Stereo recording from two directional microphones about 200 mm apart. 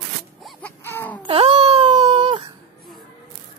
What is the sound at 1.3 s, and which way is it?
Wail, 30° right (ahead or behind).